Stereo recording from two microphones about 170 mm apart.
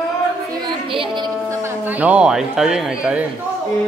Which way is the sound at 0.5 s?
30° right (ahead or behind).